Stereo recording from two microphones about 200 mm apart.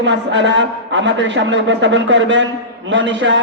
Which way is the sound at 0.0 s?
65° right (ahead or behind).